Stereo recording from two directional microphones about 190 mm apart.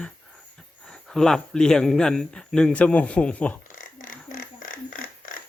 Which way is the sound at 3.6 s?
45° left (ahead or behind).